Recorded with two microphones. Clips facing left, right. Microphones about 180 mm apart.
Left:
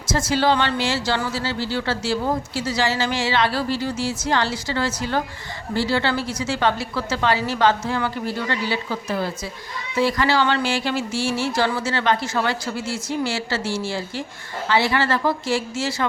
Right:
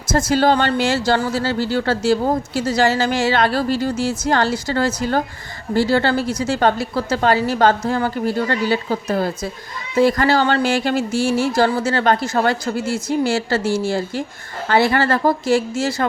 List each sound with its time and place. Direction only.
0.3 s speech: 45° right (ahead or behind)